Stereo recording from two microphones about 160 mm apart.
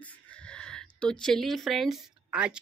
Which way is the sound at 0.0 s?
5° left (ahead or behind).